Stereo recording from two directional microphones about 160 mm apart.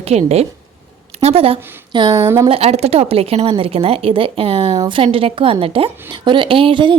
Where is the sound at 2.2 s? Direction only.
15° right (ahead or behind).